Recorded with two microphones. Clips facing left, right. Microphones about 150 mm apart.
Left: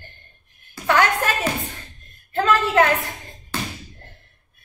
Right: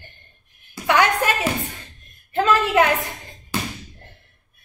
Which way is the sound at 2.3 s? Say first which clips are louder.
Even; 15° right (ahead or behind).